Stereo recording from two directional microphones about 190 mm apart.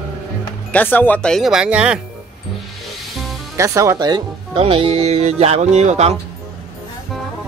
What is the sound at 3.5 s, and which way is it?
Speech, 15° right (ahead or behind).